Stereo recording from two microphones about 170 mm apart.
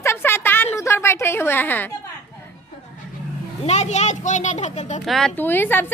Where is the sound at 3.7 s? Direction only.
40° left (ahead or behind).